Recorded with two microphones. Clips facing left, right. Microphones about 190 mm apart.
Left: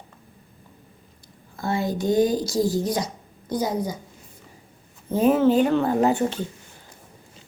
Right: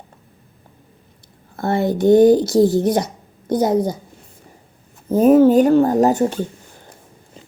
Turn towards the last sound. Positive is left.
turn(degrees=-45)  # may be behind; listen again after turning